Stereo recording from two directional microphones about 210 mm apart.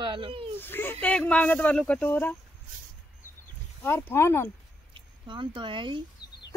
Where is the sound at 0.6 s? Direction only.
10° left (ahead or behind).